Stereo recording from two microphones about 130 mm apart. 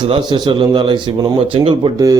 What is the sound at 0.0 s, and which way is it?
A man's voice, 35° right (ahead or behind).